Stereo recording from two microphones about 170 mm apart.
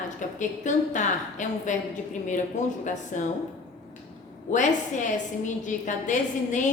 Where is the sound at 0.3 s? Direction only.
45° left (ahead or behind).